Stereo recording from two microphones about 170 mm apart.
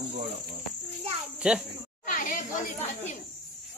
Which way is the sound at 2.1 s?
50° left (ahead or behind).